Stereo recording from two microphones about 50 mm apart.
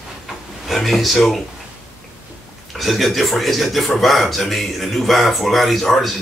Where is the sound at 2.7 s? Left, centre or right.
Centre.